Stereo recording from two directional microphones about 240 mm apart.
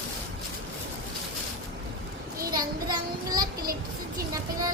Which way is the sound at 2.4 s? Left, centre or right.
Centre.